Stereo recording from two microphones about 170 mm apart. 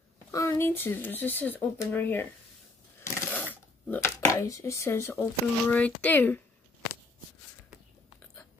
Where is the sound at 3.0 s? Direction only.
10° left (ahead or behind).